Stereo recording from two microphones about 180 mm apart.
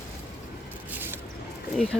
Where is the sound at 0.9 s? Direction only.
10° right (ahead or behind).